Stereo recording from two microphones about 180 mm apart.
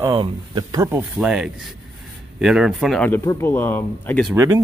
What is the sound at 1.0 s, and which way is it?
Speech, 5° right (ahead or behind).